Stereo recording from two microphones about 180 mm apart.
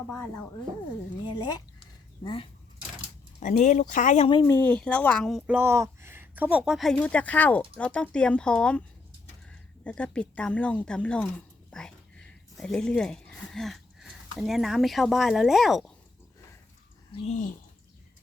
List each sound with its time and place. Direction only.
1.4 s speech: 25° left (ahead or behind)
3.4 s speech: 40° left (ahead or behind)
4.4 s speech: 10° left (ahead or behind)
5.5 s speech: 10° right (ahead or behind)
17.1 s speech: 30° left (ahead or behind)